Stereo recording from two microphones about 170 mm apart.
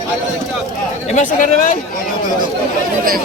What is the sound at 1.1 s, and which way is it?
Speech, 45° left (ahead or behind).